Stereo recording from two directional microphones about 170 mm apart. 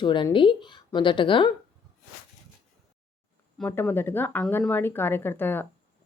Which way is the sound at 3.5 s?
10° left (ahead or behind).